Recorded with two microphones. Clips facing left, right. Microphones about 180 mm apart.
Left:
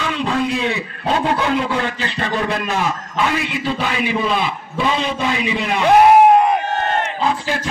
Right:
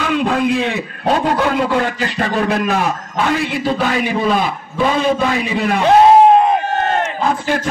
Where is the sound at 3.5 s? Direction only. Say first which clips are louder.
Right 4 dB; 45° right (ahead or behind).